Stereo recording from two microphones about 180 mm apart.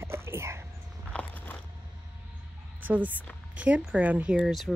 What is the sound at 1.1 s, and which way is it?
Biting, 10° left (ahead or behind).